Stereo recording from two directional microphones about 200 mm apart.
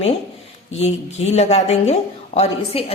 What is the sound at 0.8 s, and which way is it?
A woman's voice, 35° left (ahead or behind).